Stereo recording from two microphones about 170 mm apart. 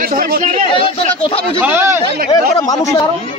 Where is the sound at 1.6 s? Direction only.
10° right (ahead or behind).